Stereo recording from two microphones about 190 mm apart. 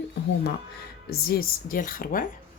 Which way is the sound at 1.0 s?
55° left (ahead or behind).